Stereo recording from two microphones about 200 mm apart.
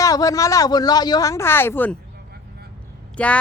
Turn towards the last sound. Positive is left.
turn(degrees=5)  # may be behind; listen again after turning